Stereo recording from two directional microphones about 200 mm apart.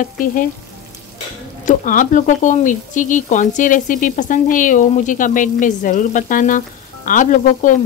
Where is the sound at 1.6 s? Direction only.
40° left (ahead or behind).